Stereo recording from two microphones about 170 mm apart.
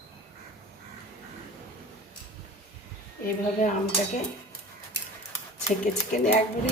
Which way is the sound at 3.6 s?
45° left (ahead or behind).